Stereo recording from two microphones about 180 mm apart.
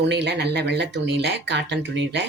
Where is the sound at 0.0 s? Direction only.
70° right (ahead or behind).